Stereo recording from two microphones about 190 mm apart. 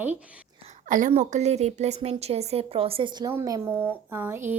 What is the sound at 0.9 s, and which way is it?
A woman's voice, 45° right (ahead or behind).